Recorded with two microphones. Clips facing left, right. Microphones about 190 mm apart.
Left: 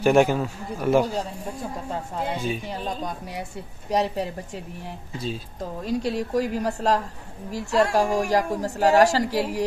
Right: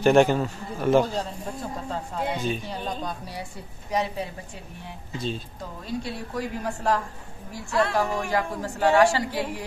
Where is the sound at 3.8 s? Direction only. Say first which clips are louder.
Left 3 dB; 40° left (ahead or behind).